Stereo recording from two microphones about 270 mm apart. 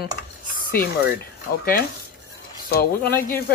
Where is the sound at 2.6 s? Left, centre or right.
Left.